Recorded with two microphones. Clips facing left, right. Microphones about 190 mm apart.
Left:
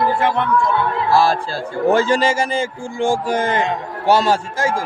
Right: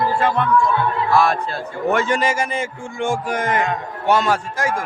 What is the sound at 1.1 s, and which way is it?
A man's voice, 30° left (ahead or behind).